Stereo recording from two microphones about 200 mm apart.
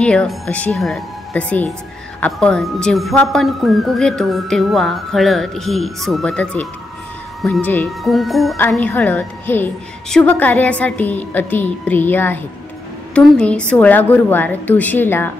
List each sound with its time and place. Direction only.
0.0 s a woman's voice: 5° left (ahead or behind)